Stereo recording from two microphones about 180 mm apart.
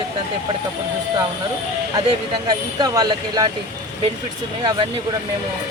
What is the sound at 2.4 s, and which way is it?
Speech, 25° right (ahead or behind).